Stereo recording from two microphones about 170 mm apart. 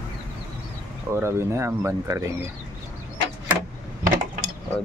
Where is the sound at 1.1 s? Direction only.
15° right (ahead or behind).